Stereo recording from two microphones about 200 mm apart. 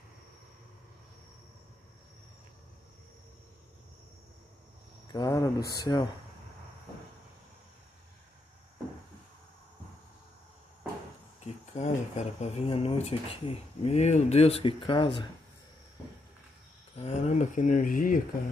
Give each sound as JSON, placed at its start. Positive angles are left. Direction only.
{"t": 5.0, "sound": "speech", "side_deg": 20}
{"t": 11.4, "sound": "speech", "side_deg": 35}
{"t": 16.9, "sound": "speech", "side_deg": 30}